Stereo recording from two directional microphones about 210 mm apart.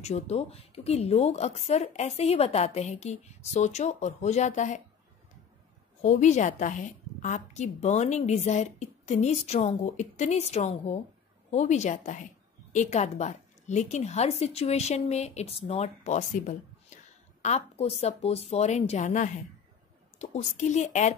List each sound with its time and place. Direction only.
0.0 s a woman's voice: 30° left (ahead or behind)
6.0 s a woman's voice: 35° left (ahead or behind)